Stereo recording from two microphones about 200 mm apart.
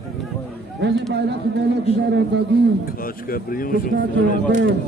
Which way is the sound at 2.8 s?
45° left (ahead or behind).